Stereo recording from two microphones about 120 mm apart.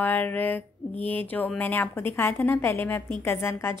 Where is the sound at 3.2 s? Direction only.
20° left (ahead or behind).